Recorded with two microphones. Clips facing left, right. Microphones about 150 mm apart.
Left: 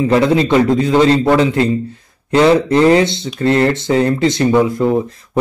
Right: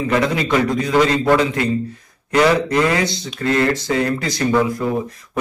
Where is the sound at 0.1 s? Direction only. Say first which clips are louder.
Left 5 dB; 30° left (ahead or behind).